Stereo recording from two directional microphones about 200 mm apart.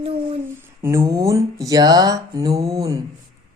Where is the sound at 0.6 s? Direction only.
10° right (ahead or behind).